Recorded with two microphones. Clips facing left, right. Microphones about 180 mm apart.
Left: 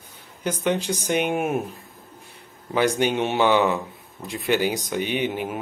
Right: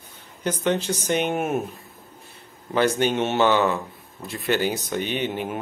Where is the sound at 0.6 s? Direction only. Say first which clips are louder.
Even; 10° left (ahead or behind).